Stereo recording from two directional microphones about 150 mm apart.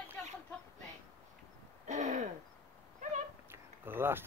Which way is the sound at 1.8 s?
55° right (ahead or behind).